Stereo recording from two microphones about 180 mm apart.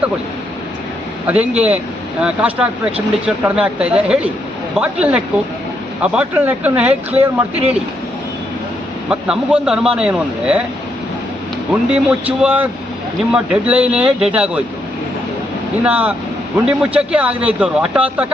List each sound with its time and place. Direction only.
1.3 s speech: 5° right (ahead or behind)
9.0 s a man's voice: 5° right (ahead or behind)
11.7 s speech: 5° right (ahead or behind)
15.8 s speech: 10° right (ahead or behind)